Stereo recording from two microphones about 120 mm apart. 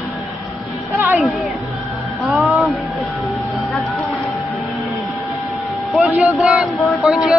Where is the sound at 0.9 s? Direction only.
15° right (ahead or behind).